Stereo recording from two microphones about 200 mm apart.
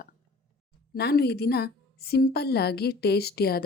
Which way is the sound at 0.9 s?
55° left (ahead or behind).